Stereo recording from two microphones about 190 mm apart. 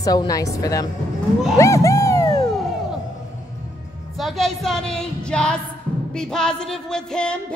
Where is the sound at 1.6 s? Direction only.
15° left (ahead or behind).